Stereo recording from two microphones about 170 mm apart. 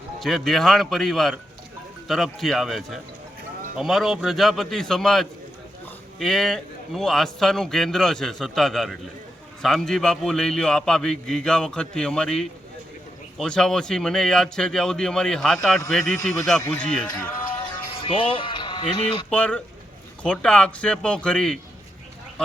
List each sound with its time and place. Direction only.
0.2 s a man's voice: centre (ahead or behind)
17.9 s speech: 30° left (ahead or behind)
19.3 s a man's voice: 10° left (ahead or behind)